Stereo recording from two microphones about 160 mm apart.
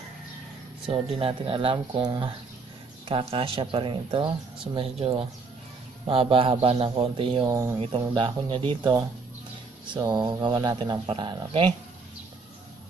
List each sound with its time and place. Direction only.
0.8 s a man's voice: 35° right (ahead or behind)